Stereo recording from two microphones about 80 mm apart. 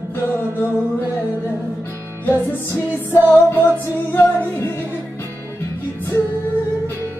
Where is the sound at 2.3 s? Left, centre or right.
Left.